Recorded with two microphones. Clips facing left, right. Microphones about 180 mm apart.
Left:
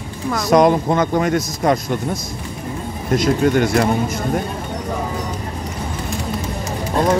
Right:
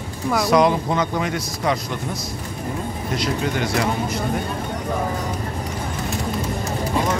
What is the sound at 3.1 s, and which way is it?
Speech, 50° left (ahead or behind).